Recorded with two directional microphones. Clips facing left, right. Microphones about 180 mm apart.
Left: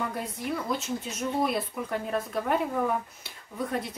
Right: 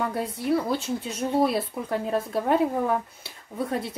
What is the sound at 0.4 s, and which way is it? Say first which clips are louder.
Speech: right 7 dB; 30° right (ahead or behind).